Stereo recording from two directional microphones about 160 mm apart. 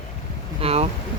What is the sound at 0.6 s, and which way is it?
Speech, 40° right (ahead or behind).